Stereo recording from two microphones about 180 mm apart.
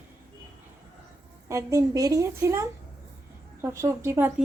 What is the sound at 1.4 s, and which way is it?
A woman's voice, 15° right (ahead or behind).